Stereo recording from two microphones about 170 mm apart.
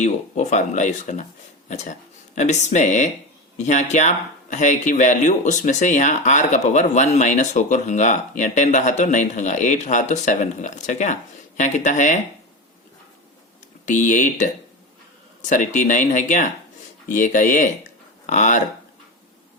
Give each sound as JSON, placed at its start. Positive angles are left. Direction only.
{"t": 0.0, "sound": "speech", "side_deg": 45}
{"t": 13.8, "sound": "speech", "side_deg": 45}